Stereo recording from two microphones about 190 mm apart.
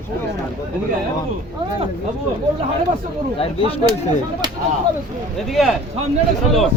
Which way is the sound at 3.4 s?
30° left (ahead or behind).